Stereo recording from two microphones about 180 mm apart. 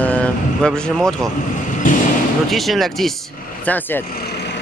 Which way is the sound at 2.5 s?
Centre (ahead or behind).